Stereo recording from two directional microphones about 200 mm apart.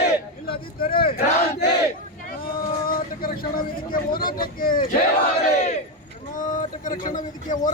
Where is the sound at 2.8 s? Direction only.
45° left (ahead or behind).